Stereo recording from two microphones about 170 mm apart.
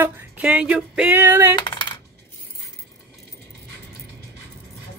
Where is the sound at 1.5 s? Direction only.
30° left (ahead or behind).